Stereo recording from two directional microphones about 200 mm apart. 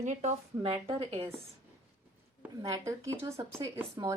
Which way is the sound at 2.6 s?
15° right (ahead or behind).